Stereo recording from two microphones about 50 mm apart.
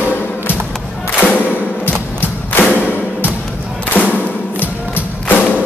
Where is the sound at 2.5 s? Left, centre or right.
Left.